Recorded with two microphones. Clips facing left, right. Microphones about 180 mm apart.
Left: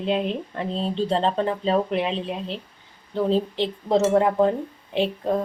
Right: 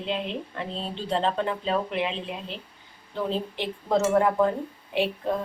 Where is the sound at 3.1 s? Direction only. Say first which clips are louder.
Left 7 dB; 35° left (ahead or behind).